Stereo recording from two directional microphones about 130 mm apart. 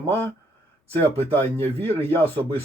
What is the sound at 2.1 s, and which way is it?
Speech, 15° left (ahead or behind).